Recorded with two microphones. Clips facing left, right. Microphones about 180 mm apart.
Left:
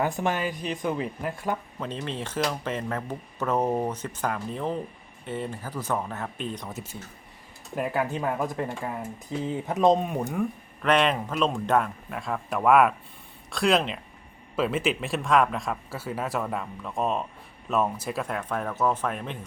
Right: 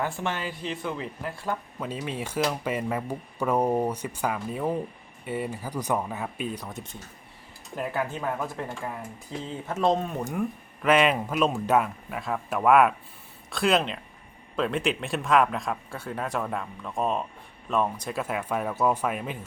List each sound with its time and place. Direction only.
0.0 s speech: 15° left (ahead or behind)
1.8 s speech: 10° right (ahead or behind)
6.7 s speech: 5° left (ahead or behind)
7.8 s speech: 15° left (ahead or behind)
10.8 s speech: 5° right (ahead or behind)